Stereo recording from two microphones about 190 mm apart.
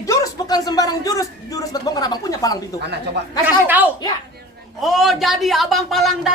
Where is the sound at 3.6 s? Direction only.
10° right (ahead or behind).